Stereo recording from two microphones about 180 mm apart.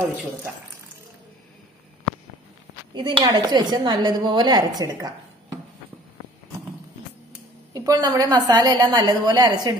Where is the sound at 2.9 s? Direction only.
25° right (ahead or behind).